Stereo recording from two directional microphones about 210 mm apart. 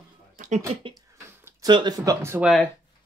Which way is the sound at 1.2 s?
15° right (ahead or behind).